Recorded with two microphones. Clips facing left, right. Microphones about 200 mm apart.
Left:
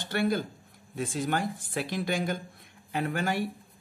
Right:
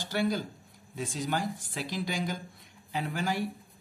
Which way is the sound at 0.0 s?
55° left (ahead or behind).